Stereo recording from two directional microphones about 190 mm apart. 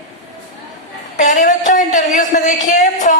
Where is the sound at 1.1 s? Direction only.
40° left (ahead or behind).